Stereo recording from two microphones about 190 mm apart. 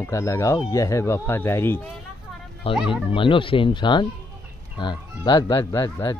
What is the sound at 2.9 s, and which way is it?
Speech, 25° left (ahead or behind).